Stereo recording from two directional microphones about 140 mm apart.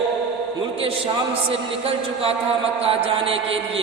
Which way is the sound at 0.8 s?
40° right (ahead or behind).